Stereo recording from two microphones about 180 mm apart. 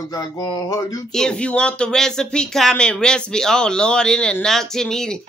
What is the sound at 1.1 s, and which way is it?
Speech, 5° left (ahead or behind).